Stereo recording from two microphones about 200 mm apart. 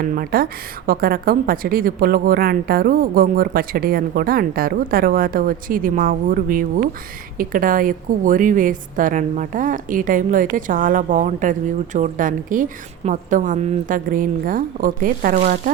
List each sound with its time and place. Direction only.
0.0 s a woman's voice: 45° right (ahead or behind)